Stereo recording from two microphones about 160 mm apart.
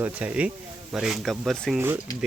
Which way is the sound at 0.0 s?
10° right (ahead or behind).